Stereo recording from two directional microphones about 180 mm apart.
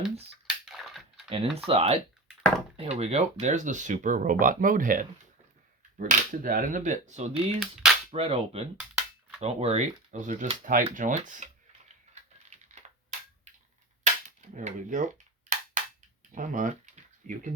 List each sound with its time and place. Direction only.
0.4 s a sound: 5° right (ahead or behind)
1.3 s speech: 30° right (ahead or behind)
7.6 s cap gun: centre (ahead or behind)
8.1 s speech: 35° right (ahead or behind)
12.5 s computer keyboard: 40° right (ahead or behind)
14.5 s cap gun: 45° right (ahead or behind)
16.3 s speech: 45° right (ahead or behind)